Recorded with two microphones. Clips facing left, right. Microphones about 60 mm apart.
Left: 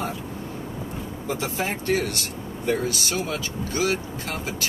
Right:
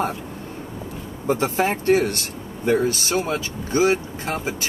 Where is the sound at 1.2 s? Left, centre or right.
Right.